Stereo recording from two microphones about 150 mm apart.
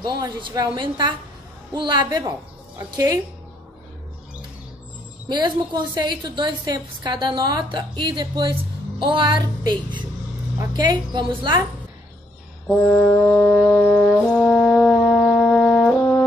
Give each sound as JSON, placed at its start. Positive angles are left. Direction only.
{"t": 0.0, "sound": "a woman's voice", "side_deg": -30}
{"t": 5.3, "sound": "a woman's voice", "side_deg": -30}
{"t": 12.6, "sound": "music", "side_deg": 10}
{"t": 14.3, "sound": "brass instrument", "side_deg": 10}